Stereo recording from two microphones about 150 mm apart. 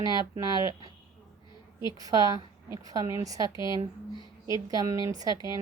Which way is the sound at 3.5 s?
30° left (ahead or behind).